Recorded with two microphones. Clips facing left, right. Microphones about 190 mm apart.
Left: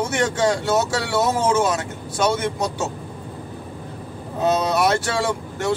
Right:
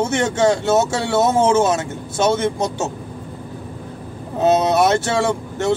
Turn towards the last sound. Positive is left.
turn(degrees=-25)  # may be behind; listen again after turning